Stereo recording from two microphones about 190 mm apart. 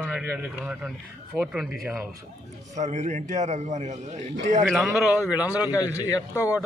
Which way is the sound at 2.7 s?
40° right (ahead or behind).